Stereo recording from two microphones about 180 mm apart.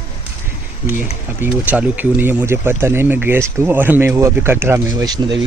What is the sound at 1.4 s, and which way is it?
Speech, 10° right (ahead or behind).